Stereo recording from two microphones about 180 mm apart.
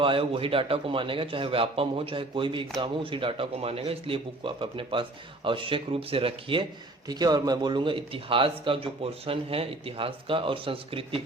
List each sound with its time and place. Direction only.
0.0 s a man's voice: 30° right (ahead or behind)